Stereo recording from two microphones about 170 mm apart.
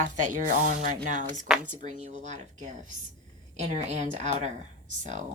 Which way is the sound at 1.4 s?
5° right (ahead or behind).